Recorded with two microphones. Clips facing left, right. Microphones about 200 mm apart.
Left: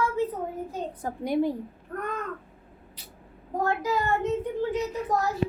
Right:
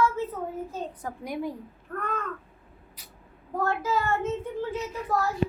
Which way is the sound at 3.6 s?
15° left (ahead or behind).